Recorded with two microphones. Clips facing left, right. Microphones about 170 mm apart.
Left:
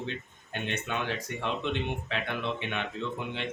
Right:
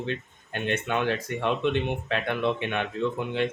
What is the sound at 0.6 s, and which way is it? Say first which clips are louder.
A man's voice: right 7 dB; 55° right (ahead or behind).